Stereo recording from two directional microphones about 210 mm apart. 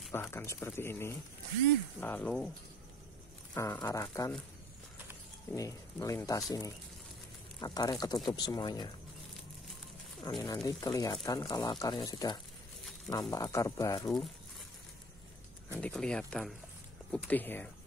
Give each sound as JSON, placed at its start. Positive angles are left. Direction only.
{"t": 0.1, "sound": "speech", "side_deg": 10}
{"t": 3.5, "sound": "speech", "side_deg": 15}
{"t": 5.5, "sound": "speech", "side_deg": 15}
{"t": 7.6, "sound": "speech", "side_deg": 20}
{"t": 10.2, "sound": "speech", "side_deg": 20}
{"t": 15.7, "sound": "speech", "side_deg": 5}